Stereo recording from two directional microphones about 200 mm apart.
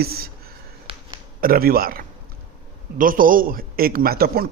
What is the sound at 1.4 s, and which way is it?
Speech, 45° right (ahead or behind).